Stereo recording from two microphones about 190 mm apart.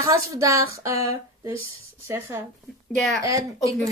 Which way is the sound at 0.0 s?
15° right (ahead or behind).